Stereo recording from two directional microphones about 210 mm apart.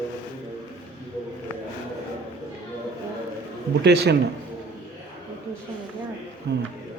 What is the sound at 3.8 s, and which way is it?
Speech, 50° right (ahead or behind).